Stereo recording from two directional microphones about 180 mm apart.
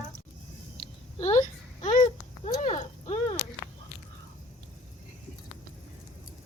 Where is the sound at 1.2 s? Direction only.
40° left (ahead or behind).